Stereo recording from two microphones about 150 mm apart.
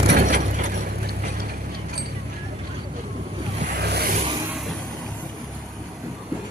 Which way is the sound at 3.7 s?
90° right.